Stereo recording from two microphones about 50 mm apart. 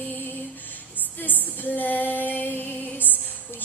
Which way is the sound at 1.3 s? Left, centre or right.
Left.